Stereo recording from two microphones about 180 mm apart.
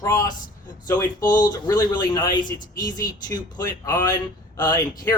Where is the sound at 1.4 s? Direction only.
20° left (ahead or behind).